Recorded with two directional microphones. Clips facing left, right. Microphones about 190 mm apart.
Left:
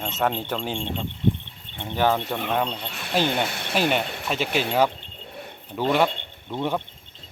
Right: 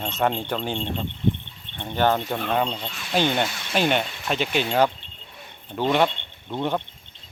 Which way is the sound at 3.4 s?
65° left (ahead or behind).